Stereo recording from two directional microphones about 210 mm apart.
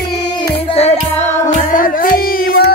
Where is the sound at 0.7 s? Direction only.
30° left (ahead or behind).